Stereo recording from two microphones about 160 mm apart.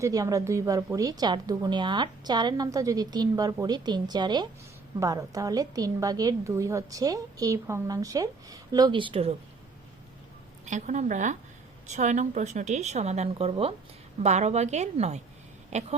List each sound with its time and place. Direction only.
0.0 s a woman's voice: 20° right (ahead or behind)
10.7 s a woman's voice: 50° right (ahead or behind)
15.7 s a sound: 45° right (ahead or behind)